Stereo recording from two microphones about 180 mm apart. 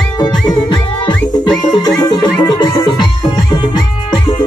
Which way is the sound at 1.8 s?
20° left (ahead or behind).